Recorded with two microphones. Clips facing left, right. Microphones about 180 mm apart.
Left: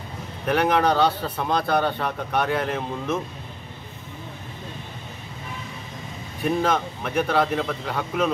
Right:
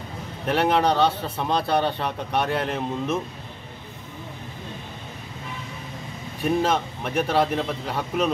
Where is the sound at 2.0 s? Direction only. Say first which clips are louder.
Left 1 dB; centre (ahead or behind).